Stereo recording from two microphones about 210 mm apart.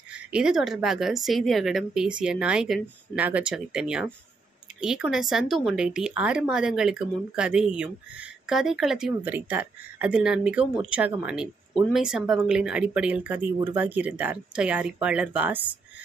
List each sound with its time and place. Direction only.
0.1 s speech: 5° right (ahead or behind)